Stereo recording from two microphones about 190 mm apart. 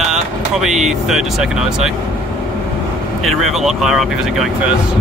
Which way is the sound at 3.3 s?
Centre (ahead or behind).